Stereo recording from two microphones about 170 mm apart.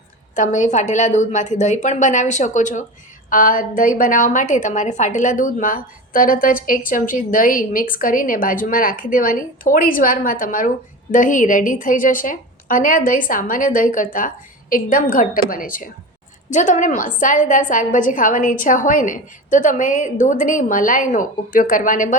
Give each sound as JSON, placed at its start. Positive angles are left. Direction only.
{"t": 0.3, "sound": "a woman's voice", "side_deg": 50}